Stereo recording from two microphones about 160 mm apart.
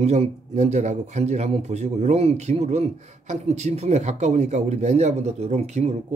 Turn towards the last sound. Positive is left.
turn(degrees=-40)  # may be behind; listen again after turning